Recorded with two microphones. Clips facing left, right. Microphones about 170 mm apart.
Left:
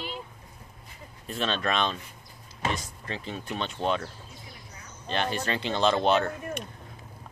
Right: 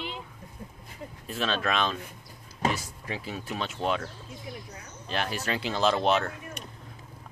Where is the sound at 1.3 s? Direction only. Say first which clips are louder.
Even; centre (ahead or behind).